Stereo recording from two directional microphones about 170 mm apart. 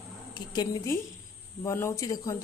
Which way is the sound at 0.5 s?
20° left (ahead or behind).